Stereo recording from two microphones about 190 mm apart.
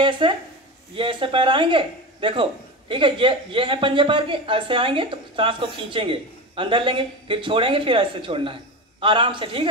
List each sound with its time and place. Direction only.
0.2 s speech: 25° right (ahead or behind)